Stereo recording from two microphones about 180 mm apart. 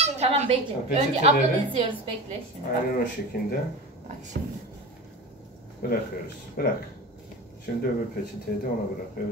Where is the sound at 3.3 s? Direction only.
55° left (ahead or behind).